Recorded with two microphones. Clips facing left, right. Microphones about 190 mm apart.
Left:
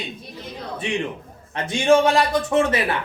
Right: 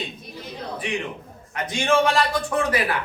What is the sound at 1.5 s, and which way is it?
Speech, 25° left (ahead or behind).